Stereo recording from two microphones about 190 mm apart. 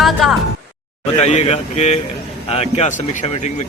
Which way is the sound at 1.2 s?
35° left (ahead or behind).